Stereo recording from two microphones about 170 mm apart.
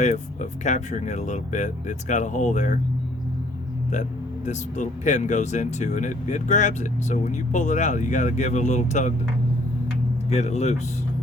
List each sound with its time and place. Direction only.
0.6 s speech: 45° left (ahead or behind)
4.4 s speech: 45° left (ahead or behind)
10.2 s speech: 40° left (ahead or behind)